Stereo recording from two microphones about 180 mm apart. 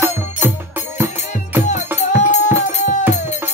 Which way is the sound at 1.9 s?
40° left (ahead or behind).